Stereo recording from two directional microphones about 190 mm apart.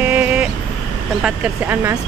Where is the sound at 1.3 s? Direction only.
10° right (ahead or behind).